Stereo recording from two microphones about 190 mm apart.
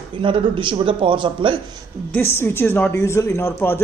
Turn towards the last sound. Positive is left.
turn(degrees=10)  # may be behind; listen again after turning